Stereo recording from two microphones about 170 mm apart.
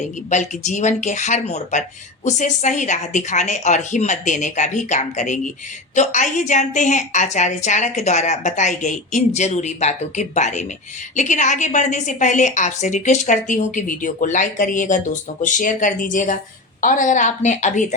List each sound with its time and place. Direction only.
0.0 s a woman's voice: 45° left (ahead or behind)